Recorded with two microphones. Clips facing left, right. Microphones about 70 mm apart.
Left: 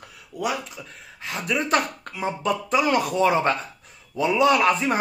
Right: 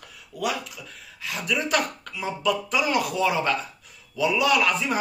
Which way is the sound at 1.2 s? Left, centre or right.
Left.